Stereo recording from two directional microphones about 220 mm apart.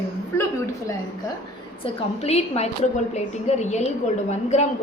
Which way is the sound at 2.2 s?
30° left (ahead or behind).